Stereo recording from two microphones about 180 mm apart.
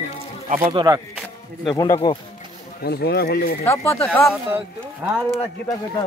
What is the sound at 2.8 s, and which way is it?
Speech, 60° left (ahead or behind).